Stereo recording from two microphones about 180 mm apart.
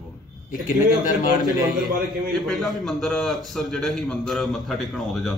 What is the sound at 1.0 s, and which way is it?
Speech, 50° left (ahead or behind).